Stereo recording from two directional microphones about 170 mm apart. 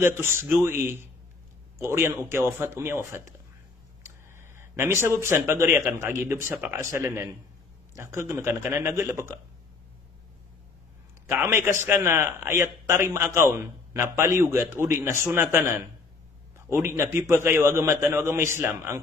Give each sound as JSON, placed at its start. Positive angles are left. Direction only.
{"t": 0.0, "sound": "a man's voice", "side_deg": -15}
{"t": 11.2, "sound": "a man's voice", "side_deg": -15}